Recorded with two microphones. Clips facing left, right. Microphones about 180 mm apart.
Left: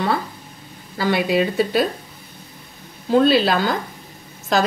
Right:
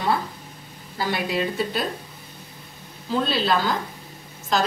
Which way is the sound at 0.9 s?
75° left (ahead or behind).